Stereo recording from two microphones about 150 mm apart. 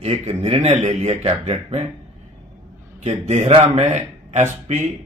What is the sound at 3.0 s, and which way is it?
Speech, 50° right (ahead or behind).